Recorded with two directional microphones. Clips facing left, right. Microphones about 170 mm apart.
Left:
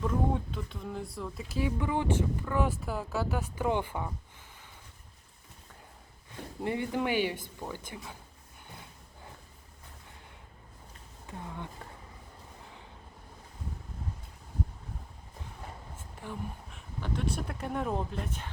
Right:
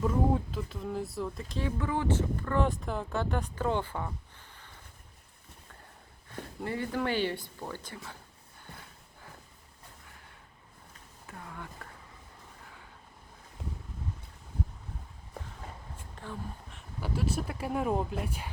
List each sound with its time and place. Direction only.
0.0 s speech: 5° right (ahead or behind)
6.6 s speech: 20° left (ahead or behind)
8.7 s a sound: 20° left (ahead or behind)
11.3 s speech: 20° left (ahead or behind)
16.2 s speech: 10° left (ahead or behind)
16.6 s speech: centre (ahead or behind)